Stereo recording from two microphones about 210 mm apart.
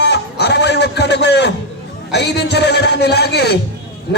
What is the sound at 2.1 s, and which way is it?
A man's voice, 55° left (ahead or behind).